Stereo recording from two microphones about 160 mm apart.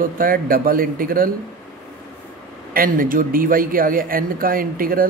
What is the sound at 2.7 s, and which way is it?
Speech, 60° right (ahead or behind).